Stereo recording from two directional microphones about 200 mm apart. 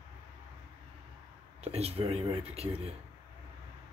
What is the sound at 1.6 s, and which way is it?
Speech, 30° right (ahead or behind).